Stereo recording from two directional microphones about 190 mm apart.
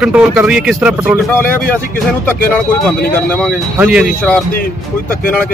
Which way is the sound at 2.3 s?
10° left (ahead or behind).